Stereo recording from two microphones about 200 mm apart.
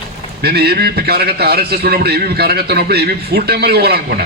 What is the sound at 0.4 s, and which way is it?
A man's voice, 55° right (ahead or behind).